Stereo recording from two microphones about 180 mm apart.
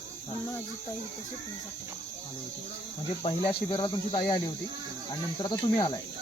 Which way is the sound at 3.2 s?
30° left (ahead or behind).